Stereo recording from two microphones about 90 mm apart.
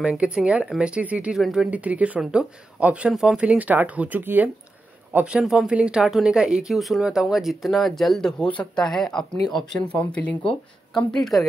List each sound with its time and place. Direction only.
0.0 s speech: 10° right (ahead or behind)
1.4 s speech: 5° right (ahead or behind)
1.7 s speech: 15° right (ahead or behind); by 9.2 s 5° left (ahead or behind)
9.8 s speech: 15° left (ahead or behind)